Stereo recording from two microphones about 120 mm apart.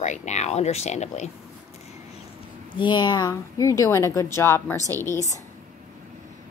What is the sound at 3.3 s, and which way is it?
A woman's voice, 25° left (ahead or behind).